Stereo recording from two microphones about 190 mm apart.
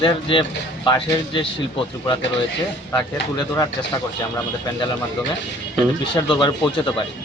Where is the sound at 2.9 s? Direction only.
20° left (ahead or behind).